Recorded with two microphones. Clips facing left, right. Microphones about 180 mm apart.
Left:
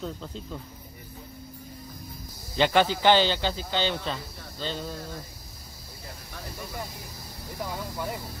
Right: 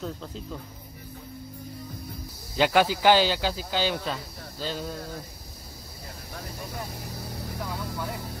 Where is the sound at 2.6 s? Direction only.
5° right (ahead or behind).